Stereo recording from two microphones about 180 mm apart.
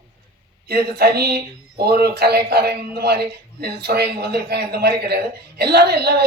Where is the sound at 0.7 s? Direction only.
60° right (ahead or behind).